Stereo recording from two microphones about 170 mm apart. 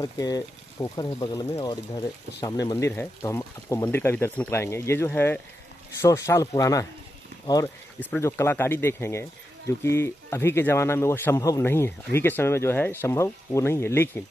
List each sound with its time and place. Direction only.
0.0 s speech: 20° left (ahead or behind)